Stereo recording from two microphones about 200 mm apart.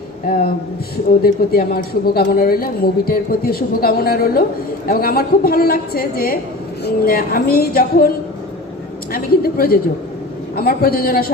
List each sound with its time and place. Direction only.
0.3 s a woman's voice: 45° left (ahead or behind)
9.1 s a woman's voice: 50° left (ahead or behind)